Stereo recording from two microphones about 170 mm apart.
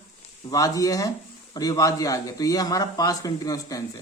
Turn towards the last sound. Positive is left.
turn(degrees=20)  # may be behind; listen again after turning